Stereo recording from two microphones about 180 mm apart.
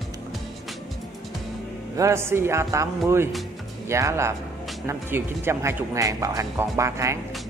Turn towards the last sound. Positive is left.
turn(degrees=-15)  # may be behind; listen again after turning